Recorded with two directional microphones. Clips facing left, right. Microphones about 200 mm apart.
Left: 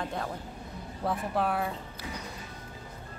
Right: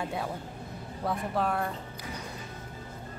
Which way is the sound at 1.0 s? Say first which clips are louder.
Even; centre (ahead or behind).